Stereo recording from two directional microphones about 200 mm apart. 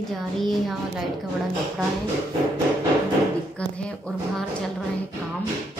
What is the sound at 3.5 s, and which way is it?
A woman's voice, 5° left (ahead or behind).